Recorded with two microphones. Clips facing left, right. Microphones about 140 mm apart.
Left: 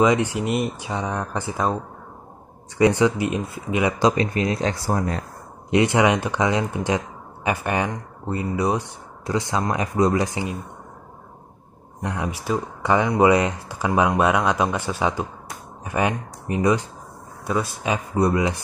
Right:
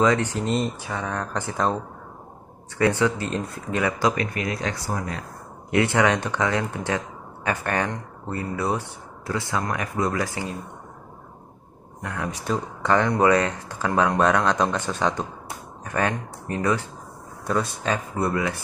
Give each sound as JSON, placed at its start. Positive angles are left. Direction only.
{"t": 0.0, "sound": "speech", "side_deg": 15}
{"t": 2.8, "sound": "speech", "side_deg": 15}
{"t": 5.7, "sound": "speech", "side_deg": 15}
{"t": 12.0, "sound": "speech", "side_deg": 20}
{"t": 12.3, "sound": "speech", "side_deg": 5}